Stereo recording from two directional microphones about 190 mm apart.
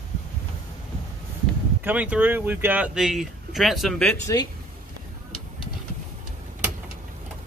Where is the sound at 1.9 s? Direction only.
10° right (ahead or behind).